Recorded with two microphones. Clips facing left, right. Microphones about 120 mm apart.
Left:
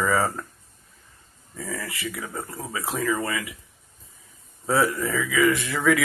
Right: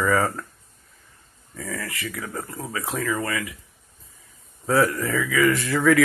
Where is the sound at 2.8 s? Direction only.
25° left (ahead or behind).